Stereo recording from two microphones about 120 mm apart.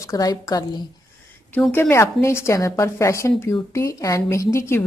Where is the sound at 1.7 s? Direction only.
20° left (ahead or behind).